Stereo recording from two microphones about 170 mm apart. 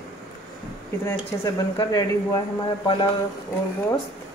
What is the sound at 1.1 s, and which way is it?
Speech, 20° left (ahead or behind).